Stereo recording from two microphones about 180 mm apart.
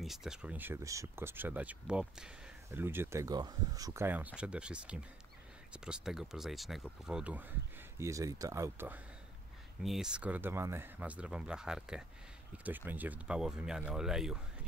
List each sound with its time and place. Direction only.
0.0 s speech: centre (ahead or behind)